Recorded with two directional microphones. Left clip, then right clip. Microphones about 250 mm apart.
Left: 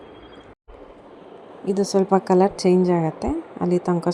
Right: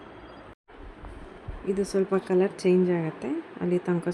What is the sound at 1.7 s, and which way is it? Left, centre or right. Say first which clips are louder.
A woman's voice: left 7 dB; centre.